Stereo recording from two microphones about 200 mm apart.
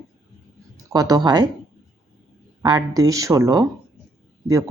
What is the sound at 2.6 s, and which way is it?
Speech, 20° right (ahead or behind).